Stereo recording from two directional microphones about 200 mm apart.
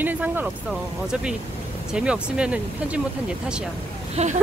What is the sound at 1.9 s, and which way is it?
Speech, 5° right (ahead or behind).